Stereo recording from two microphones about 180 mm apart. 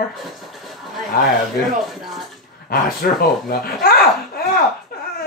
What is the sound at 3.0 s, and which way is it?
Speech, 60° left (ahead or behind).